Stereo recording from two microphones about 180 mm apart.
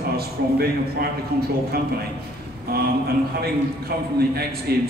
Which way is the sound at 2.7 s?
60° right (ahead or behind).